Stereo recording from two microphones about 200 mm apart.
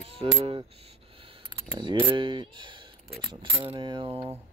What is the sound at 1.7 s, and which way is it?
Speech, 25° right (ahead or behind).